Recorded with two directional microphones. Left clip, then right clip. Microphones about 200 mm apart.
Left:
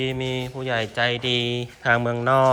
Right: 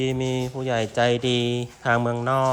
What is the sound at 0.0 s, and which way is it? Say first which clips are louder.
Speech: right 1 dB; 20° right (ahead or behind).